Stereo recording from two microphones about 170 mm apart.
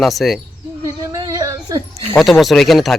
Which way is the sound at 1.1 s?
20° right (ahead or behind).